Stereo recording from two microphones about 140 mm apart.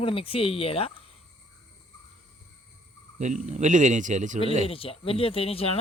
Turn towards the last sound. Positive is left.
turn(degrees=45)  # may be behind; listen again after turning